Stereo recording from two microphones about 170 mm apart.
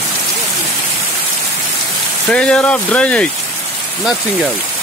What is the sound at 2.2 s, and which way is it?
Speech, 5° left (ahead or behind).